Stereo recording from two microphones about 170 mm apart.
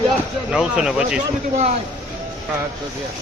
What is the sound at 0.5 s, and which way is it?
Speech, 5° right (ahead or behind).